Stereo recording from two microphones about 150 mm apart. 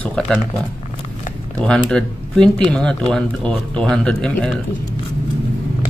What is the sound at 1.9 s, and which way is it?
Speech, 5° left (ahead or behind).